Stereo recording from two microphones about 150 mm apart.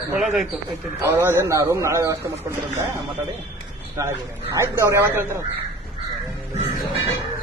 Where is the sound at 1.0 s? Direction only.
15° right (ahead or behind).